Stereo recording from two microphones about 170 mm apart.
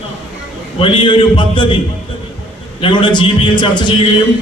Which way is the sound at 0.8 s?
30° left (ahead or behind).